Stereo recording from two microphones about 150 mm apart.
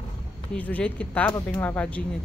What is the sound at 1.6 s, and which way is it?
Speech, 10° left (ahead or behind).